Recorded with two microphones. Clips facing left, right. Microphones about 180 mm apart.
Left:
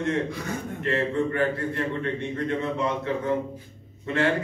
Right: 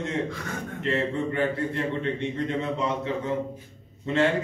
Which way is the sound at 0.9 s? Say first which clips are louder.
Left 2 dB; 20° right (ahead or behind).